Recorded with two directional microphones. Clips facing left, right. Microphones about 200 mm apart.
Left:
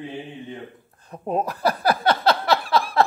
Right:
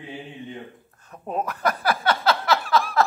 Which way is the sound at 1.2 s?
35° left (ahead or behind).